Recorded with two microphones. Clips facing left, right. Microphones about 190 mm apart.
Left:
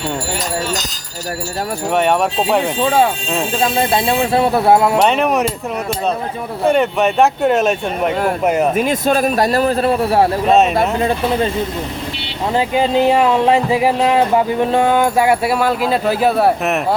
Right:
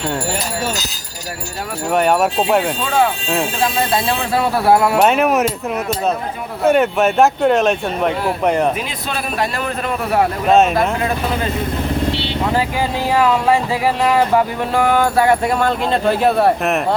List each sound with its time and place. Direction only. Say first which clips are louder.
1.9 s speech: right 1 dB; centre (ahead or behind)
3.6 s speech: left 5 dB; 25° left (ahead or behind)
4.9 s speech: even; 5° right (ahead or behind)
6.7 s speech: right 1 dB; centre (ahead or behind)
8.7 s a man's voice: left 9 dB; 45° left (ahead or behind); by 10.2 s 30° left (ahead or behind)
10.4 s speech: right 2 dB; centre (ahead or behind)
12.5 s speech: left 4 dB; 20° left (ahead or behind); by 16.8 s centre (ahead or behind)